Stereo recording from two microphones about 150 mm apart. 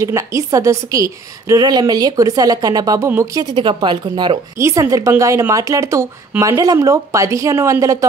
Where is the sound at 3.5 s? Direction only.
30° right (ahead or behind).